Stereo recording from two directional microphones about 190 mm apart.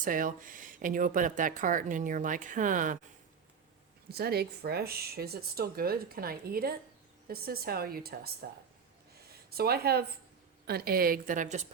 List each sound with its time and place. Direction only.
0.0 s speech: 45° right (ahead or behind)
4.1 s speech: 55° right (ahead or behind)
9.6 s speech: 55° right (ahead or behind)